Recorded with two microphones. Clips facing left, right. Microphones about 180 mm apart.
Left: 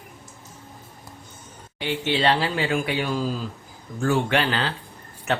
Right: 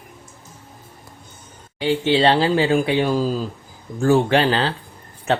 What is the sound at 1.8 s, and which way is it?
Speech, 30° right (ahead or behind).